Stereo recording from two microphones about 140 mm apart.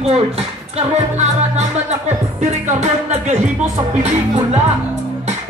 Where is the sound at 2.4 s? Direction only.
55° right (ahead or behind).